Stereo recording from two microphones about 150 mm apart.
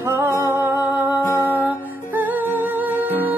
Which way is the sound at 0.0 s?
15° right (ahead or behind).